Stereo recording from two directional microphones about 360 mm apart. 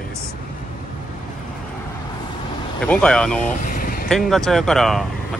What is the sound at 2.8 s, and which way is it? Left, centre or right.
Speech, centre.